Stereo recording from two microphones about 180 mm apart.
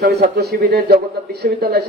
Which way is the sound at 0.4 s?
65° right (ahead or behind).